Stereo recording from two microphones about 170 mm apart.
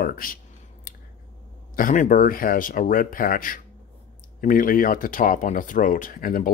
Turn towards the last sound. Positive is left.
turn(degrees=55)  # may be behind; listen again after turning